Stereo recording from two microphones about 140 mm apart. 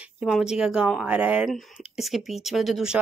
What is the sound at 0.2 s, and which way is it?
Speech, centre (ahead or behind).